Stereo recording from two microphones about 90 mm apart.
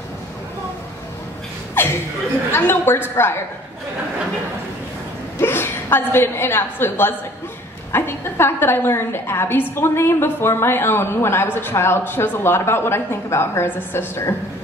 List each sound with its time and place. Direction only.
1.8 s chuckle: 25° left (ahead or behind)
2.5 s a woman's voice: 25° left (ahead or behind)
5.4 s a woman's voice: 25° left (ahead or behind)